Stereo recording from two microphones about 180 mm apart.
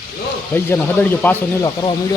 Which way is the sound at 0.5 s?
10° left (ahead or behind).